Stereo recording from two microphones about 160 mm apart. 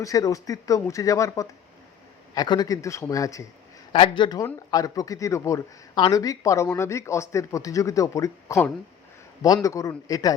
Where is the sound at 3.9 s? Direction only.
30° left (ahead or behind).